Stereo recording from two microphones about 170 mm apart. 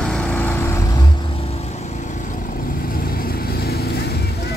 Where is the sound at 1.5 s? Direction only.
40° left (ahead or behind); by 4.6 s 65° left (ahead or behind).